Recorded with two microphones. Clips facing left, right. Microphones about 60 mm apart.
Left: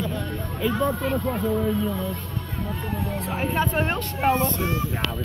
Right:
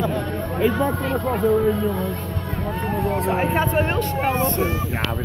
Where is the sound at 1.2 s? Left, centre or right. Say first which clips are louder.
Right 10 dB; right.